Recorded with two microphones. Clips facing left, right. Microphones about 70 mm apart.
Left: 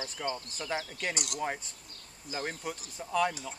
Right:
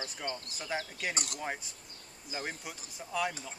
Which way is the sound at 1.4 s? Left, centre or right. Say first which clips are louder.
Left 4 dB; centre.